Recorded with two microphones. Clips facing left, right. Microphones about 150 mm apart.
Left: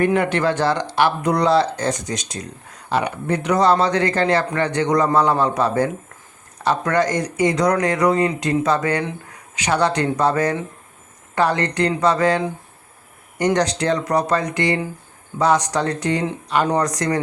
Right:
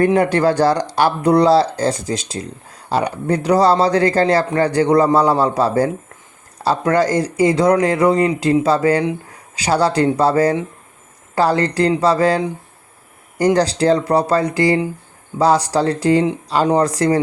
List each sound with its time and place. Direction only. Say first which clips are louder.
0.0 s speech: right 4 dB; 35° right (ahead or behind)
13.4 s speech: right 4 dB; 30° right (ahead or behind)